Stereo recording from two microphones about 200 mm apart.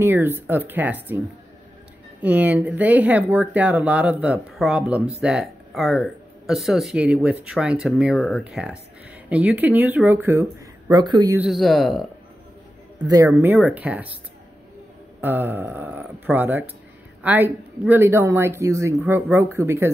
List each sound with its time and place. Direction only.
0.0 s speech: 10° right (ahead or behind)
2.2 s speech: 10° right (ahead or behind)
10.9 s speech: 20° right (ahead or behind)
11.3 s speech: centre (ahead or behind)
13.0 s speech: 15° right (ahead or behind)
15.1 s speech: 10° right (ahead or behind)